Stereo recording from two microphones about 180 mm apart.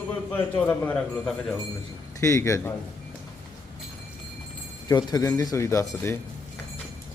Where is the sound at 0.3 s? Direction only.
10° left (ahead or behind).